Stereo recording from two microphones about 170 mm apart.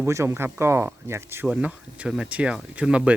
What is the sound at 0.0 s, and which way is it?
Speech, 15° right (ahead or behind).